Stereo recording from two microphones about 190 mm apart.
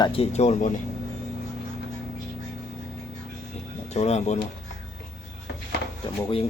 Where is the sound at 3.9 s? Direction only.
35° left (ahead or behind).